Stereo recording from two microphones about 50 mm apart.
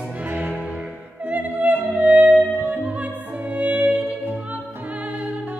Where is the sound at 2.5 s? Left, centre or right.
Right.